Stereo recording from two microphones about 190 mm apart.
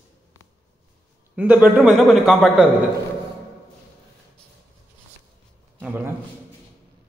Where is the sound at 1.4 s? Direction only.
5° right (ahead or behind).